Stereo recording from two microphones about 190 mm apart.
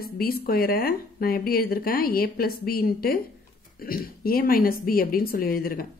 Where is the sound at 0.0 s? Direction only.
50° left (ahead or behind).